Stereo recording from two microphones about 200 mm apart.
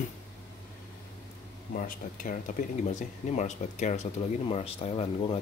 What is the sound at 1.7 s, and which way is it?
Speech, 45° left (ahead or behind).